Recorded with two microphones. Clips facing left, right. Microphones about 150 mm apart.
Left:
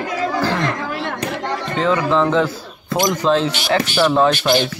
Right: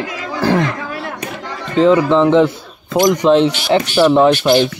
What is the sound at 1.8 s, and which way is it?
Speech, 25° right (ahead or behind).